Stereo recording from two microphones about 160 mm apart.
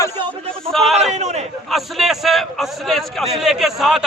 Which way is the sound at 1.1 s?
45° right (ahead or behind).